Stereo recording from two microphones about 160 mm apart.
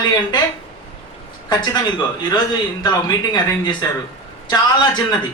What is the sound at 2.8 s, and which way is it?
A man's voice, 25° left (ahead or behind).